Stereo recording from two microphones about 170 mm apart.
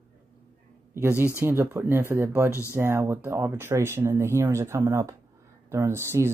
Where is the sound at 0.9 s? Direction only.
10° right (ahead or behind).